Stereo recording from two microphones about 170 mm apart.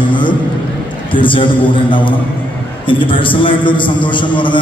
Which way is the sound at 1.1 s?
30° left (ahead or behind).